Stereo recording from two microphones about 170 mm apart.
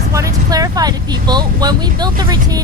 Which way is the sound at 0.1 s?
20° right (ahead or behind).